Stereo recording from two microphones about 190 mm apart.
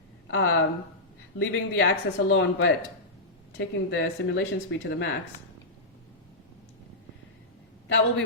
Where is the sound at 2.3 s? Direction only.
75° left (ahead or behind).